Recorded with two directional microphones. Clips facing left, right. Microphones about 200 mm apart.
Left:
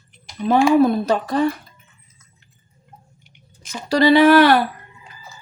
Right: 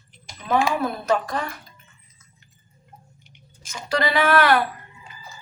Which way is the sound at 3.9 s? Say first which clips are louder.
Left 9 dB; 35° left (ahead or behind).